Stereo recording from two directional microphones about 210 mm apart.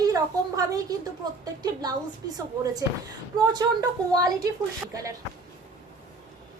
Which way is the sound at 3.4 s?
20° right (ahead or behind).